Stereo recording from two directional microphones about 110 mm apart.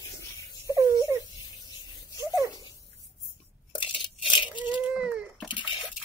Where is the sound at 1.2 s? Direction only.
35° left (ahead or behind).